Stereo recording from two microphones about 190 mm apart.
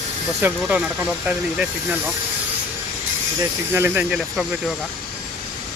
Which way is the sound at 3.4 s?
15° right (ahead or behind).